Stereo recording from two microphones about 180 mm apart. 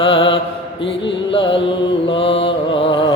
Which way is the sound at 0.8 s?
30° left (ahead or behind).